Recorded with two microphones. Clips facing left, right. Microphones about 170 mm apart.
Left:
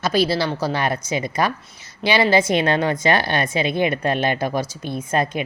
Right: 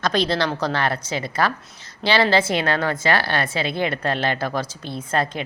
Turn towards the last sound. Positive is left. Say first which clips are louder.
# left 2 dB
turn(degrees=15)  # may be behind; listen again after turning